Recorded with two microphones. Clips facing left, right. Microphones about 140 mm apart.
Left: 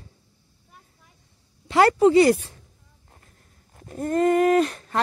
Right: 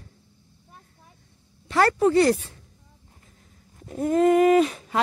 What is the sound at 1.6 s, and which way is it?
Speech, 15° left (ahead or behind).